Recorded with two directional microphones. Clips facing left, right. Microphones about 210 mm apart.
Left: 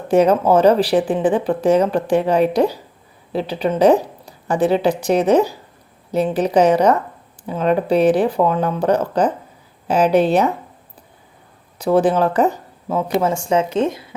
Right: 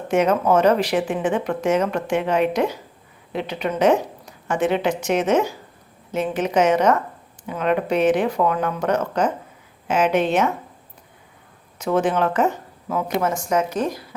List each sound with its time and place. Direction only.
0.1 s speech: 35° left (ahead or behind)
11.8 s speech: 35° left (ahead or behind)